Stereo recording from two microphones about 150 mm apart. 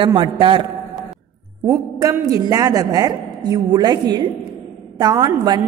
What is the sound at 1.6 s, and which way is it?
A man's voice, 20° right (ahead or behind).